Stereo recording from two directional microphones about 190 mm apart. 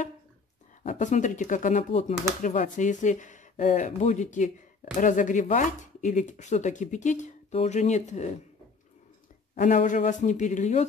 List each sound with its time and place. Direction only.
0.8 s speech: 40° left (ahead or behind)
9.6 s speech: 45° left (ahead or behind)